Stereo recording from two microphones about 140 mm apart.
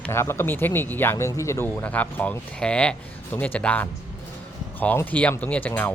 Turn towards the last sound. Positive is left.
turn(degrees=10)  # may be behind; listen again after turning